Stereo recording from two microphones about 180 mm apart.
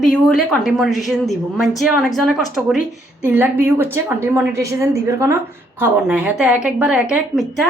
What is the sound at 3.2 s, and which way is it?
A woman's voice, 10° right (ahead or behind).